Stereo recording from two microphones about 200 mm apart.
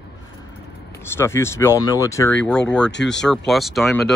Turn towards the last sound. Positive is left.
turn(degrees=0)  # may be behind; listen again after turning